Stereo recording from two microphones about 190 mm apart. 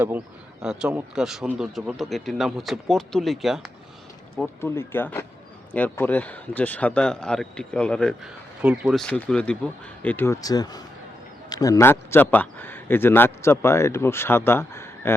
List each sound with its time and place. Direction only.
0.6 s speech: 5° right (ahead or behind)
4.6 s a man's voice: 15° left (ahead or behind)